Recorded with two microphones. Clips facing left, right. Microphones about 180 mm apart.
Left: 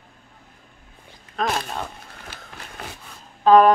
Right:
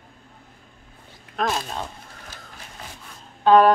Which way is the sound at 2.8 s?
65° left (ahead or behind).